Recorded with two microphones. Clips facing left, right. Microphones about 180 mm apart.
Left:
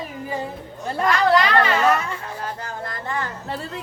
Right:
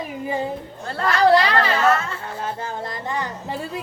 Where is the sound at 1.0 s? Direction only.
35° right (ahead or behind).